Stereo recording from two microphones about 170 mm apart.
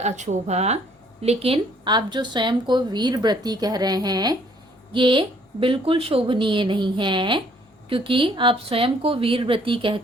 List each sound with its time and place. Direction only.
0.0 s speech: 45° right (ahead or behind)